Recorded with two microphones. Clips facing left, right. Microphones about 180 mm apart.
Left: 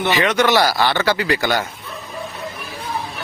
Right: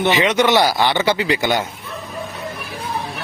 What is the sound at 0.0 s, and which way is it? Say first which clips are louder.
Speech: right 1 dB; 20° right (ahead or behind).